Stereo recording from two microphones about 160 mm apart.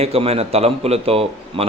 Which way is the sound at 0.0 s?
40° right (ahead or behind).